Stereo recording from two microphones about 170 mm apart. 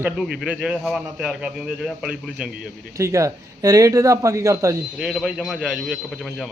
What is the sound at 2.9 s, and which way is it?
A man's voice, 20° right (ahead or behind).